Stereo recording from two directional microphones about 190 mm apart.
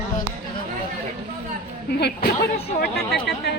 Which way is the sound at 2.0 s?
55° left (ahead or behind).